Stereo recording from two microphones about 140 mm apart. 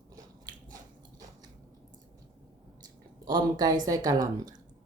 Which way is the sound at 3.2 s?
30° right (ahead or behind).